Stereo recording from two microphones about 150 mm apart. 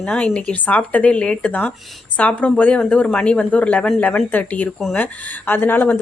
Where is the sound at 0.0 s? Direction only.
5° left (ahead or behind).